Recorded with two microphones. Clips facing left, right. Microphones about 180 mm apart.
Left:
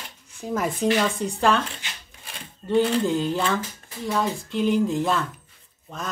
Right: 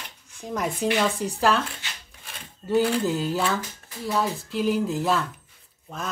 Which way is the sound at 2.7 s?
10° right (ahead or behind).